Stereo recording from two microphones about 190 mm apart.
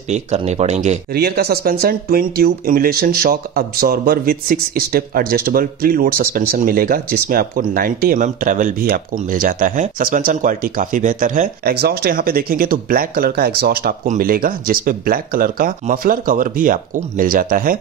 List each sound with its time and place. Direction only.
0.1 s speech: 35° right (ahead or behind)
1.1 s speech: 55° right (ahead or behind)